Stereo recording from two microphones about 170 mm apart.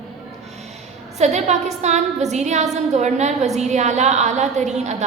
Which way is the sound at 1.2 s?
40° right (ahead or behind).